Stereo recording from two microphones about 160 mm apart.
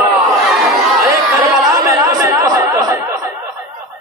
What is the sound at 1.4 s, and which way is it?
Chatter, 15° right (ahead or behind).